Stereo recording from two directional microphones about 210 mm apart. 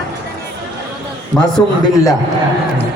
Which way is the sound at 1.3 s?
5° left (ahead or behind).